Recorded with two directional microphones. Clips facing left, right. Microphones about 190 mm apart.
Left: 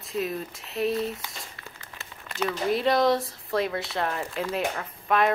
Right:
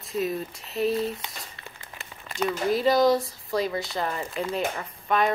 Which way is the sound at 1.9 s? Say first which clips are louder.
Right 1 dB; 15° right (ahead or behind).